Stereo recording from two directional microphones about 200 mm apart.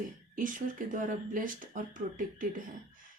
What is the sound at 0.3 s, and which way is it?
Speech, 40° right (ahead or behind).